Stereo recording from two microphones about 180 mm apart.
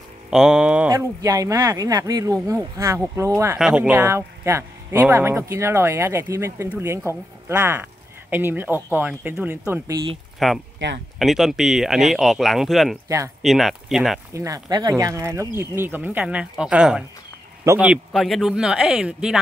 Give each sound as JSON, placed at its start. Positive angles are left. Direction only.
{"t": 0.3, "sound": "speech", "side_deg": -5}
{"t": 0.8, "sound": "speech", "side_deg": -20}
{"t": 3.5, "sound": "speech", "side_deg": -5}
{"t": 10.4, "sound": "speech", "side_deg": 0}
{"t": 14.3, "sound": "speech", "side_deg": -20}